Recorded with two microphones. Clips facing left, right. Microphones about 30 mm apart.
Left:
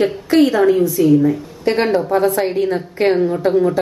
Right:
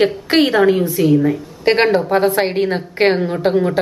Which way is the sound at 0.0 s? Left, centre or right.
Right.